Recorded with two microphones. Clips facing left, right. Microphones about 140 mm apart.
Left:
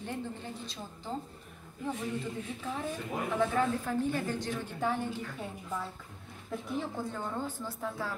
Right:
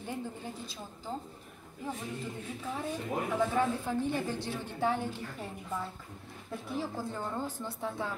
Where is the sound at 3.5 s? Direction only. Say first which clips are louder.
Even; 20° right (ahead or behind).